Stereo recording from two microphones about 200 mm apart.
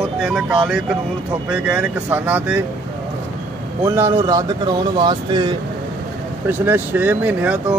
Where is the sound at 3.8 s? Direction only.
15° right (ahead or behind).